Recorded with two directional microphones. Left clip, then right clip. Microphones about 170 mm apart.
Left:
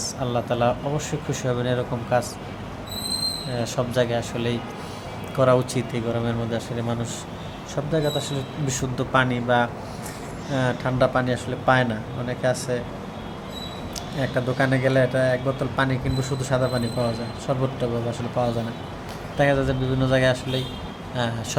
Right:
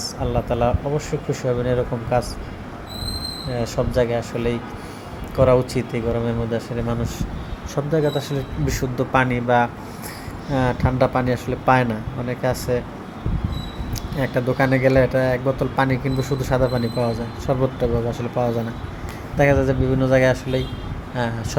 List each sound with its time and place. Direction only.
0.0 s speech: 5° right (ahead or behind)
3.6 s speech: 10° right (ahead or behind)
14.2 s speech: 20° right (ahead or behind)